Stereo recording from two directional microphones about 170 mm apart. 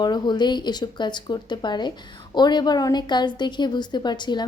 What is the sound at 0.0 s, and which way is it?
A woman's voice, 25° left (ahead or behind).